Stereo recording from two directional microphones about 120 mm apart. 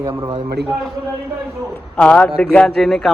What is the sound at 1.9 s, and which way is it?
A man's voice, 10° left (ahead or behind).